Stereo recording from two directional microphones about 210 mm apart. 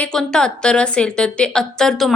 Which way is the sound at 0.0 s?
5° left (ahead or behind).